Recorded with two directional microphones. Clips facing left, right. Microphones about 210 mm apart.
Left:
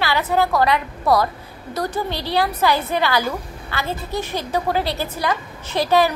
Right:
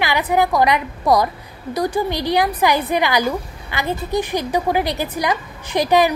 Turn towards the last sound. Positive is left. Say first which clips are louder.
# right 2 dB
turn(degrees=-15)  # may be behind; listen again after turning